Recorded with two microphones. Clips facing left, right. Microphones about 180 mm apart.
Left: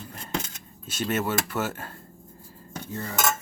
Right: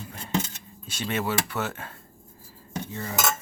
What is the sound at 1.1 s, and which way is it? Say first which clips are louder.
Speech: left 1 dB; centre (ahead or behind).